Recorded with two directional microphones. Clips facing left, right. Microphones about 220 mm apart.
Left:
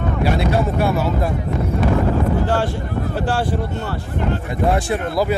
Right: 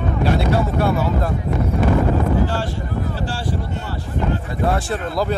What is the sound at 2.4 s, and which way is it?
Speech, 55° left (ahead or behind).